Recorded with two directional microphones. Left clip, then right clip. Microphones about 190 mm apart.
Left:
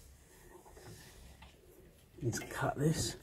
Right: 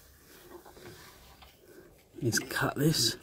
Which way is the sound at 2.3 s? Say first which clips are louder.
Right 6 dB; 80° right.